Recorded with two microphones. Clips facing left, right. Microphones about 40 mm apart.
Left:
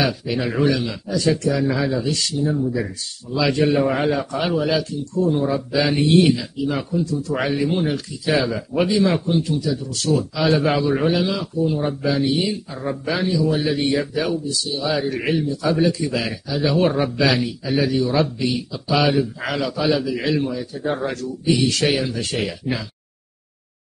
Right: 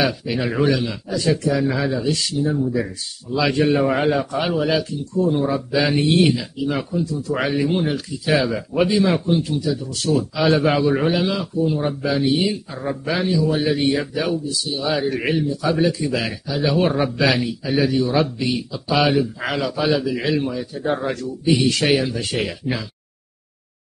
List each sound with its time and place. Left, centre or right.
0.0 s a man's voice: centre
9.7 s a man's voice: centre